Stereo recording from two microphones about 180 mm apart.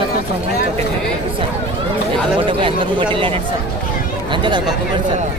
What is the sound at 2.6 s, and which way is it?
Speech, 30° right (ahead or behind).